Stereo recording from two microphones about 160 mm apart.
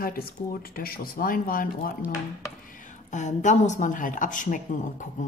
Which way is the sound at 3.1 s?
50° left (ahead or behind).